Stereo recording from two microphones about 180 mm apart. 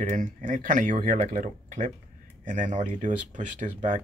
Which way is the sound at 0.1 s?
45° right (ahead or behind).